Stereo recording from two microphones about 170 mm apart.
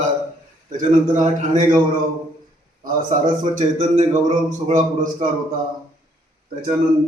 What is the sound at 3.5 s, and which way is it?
A man's voice, 45° right (ahead or behind).